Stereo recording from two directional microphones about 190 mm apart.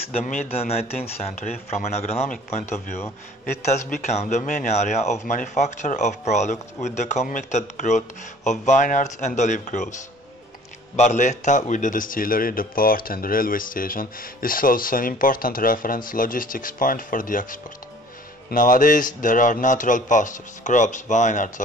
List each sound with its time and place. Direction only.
0.1 s speech: 40° left (ahead or behind)
3.9 s speech: 35° left (ahead or behind)
11.0 s a man's voice: 40° left (ahead or behind)